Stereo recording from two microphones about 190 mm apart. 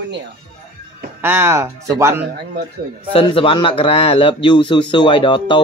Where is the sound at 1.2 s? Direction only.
10° right (ahead or behind).